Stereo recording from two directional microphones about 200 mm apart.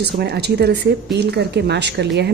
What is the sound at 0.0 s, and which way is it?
Speech, 55° right (ahead or behind).